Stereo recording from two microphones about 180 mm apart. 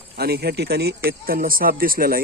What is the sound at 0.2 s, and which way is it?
Speech, 60° right (ahead or behind).